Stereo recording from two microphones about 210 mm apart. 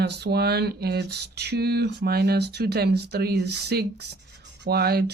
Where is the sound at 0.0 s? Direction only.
50° right (ahead or behind).